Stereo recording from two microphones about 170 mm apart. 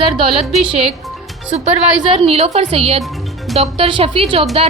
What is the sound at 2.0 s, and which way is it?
A woman's voice, 35° right (ahead or behind).